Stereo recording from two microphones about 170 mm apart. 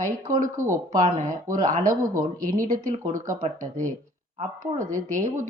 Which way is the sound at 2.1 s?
20° right (ahead or behind).